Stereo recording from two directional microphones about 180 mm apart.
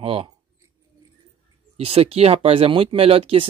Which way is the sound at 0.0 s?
30° right (ahead or behind).